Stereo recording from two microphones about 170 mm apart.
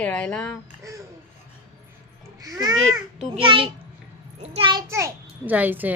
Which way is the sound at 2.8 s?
Centre (ahead or behind).